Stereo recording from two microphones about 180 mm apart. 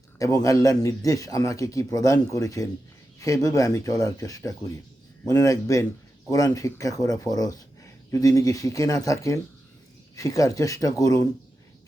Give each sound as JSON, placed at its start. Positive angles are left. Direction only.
{"t": 0.2, "sound": "a man's voice", "side_deg": 20}